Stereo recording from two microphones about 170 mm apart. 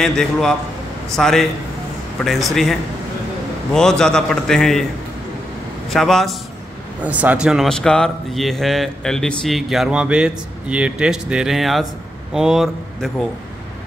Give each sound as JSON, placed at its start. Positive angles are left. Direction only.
{"t": 0.0, "sound": "speech", "side_deg": 5}
{"t": 5.9, "sound": "speech", "side_deg": 0}